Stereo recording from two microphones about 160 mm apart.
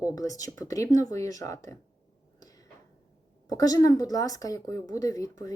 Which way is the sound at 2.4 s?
25° left (ahead or behind).